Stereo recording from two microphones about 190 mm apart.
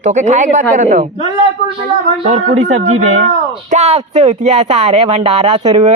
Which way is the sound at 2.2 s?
40° right (ahead or behind).